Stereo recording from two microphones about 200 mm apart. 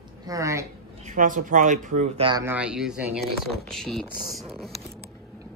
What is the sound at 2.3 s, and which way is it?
Speech, 15° right (ahead or behind).